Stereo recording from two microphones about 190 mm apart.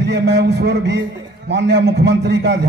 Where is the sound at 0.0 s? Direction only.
65° right (ahead or behind).